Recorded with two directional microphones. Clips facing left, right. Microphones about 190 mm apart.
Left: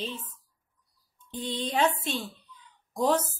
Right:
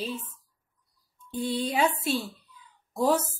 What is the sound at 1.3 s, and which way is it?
Speech, 10° right (ahead or behind).